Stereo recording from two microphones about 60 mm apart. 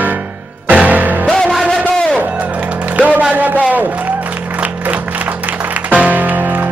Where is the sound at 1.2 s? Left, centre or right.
Centre.